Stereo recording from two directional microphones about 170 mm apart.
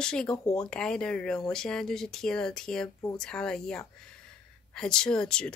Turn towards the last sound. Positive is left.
turn(degrees=5)  # may be behind; listen again after turning